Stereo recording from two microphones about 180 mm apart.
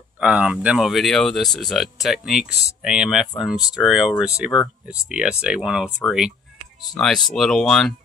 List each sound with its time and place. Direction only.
0.2 s speech: 5° right (ahead or behind)